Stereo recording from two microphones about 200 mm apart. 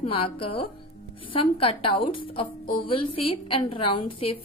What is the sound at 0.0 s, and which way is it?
A woman's voice, 30° left (ahead or behind).